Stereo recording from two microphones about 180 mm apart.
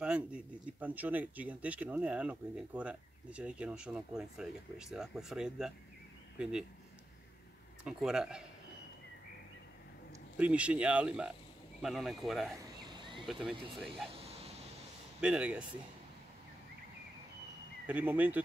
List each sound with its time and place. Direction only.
0.0 s speech: 5° right (ahead or behind)
7.8 s speech: 5° right (ahead or behind)
10.3 s speech: 5° right (ahead or behind)
12.8 s a sound: 25° right (ahead or behind)
13.3 s speech: centre (ahead or behind)
14.2 s a sound: 35° right (ahead or behind)
15.1 s speech: 5° right (ahead or behind)
17.8 s speech: 10° right (ahead or behind)